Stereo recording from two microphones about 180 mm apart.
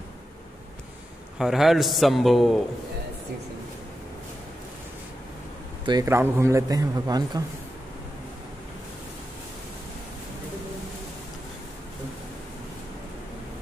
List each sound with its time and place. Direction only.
1.4 s a man's voice: centre (ahead or behind)
5.9 s a man's voice: 20° right (ahead or behind)